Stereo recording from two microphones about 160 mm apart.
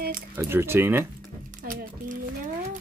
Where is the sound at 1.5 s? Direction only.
60° right (ahead or behind).